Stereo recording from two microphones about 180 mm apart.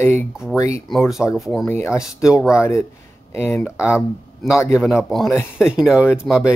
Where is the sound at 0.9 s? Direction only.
Centre (ahead or behind).